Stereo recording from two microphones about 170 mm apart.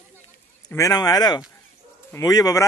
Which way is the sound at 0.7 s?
20° left (ahead or behind).